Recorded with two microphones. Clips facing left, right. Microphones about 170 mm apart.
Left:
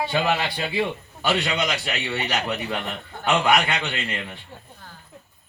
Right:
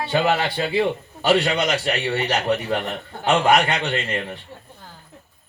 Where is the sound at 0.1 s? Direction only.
40° right (ahead or behind).